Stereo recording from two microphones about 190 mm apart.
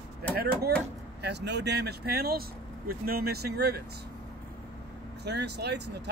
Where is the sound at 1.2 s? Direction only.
65° right (ahead or behind).